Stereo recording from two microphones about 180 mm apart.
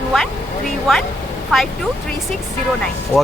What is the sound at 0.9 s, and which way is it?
Speech, centre (ahead or behind).